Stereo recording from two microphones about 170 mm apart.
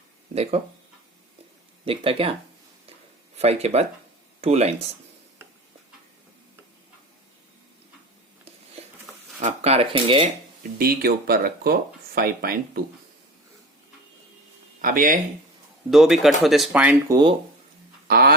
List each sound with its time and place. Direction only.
1.8 s speech: 35° right (ahead or behind)
3.3 s speech: 40° right (ahead or behind)
9.4 s speech: 40° right (ahead or behind)
10.8 s speech: 60° right (ahead or behind)
14.8 s speech: 55° right (ahead or behind)
15.9 s speech: centre (ahead or behind)
17.1 s speech: 25° right (ahead or behind)
18.1 s speech: 65° right (ahead or behind)